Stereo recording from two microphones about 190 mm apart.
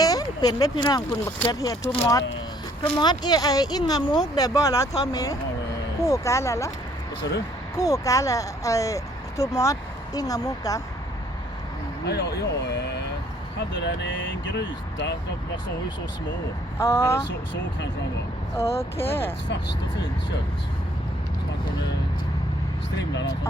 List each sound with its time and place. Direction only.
0.0 s speech: 20° left (ahead or behind)
7.8 s speech: 15° left (ahead or behind)
12.0 s speech: 60° left (ahead or behind)
13.8 s speech: 75° left (ahead or behind)
16.7 s speech: 15° left (ahead or behind)
17.2 s speech: 70° left (ahead or behind)
18.5 s speech: 15° left (ahead or behind)